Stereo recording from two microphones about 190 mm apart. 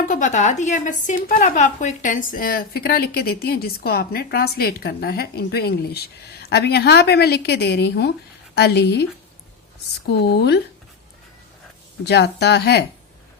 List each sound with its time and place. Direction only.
0.0 s a woman's voice: 45° left (ahead or behind); by 9.0 s 60° left (ahead or behind)
10.1 s a woman's voice: 60° left (ahead or behind)
12.0 s a woman's voice: 60° left (ahead or behind)